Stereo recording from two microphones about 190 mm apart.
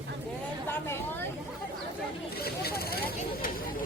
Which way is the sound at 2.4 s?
55° left (ahead or behind).